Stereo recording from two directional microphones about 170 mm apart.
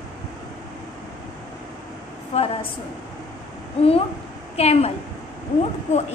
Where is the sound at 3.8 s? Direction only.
35° left (ahead or behind).